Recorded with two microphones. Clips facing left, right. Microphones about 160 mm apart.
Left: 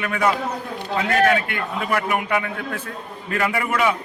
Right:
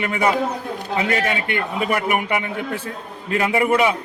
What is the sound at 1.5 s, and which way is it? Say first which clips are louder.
Speech: right 3 dB; 20° right (ahead or behind).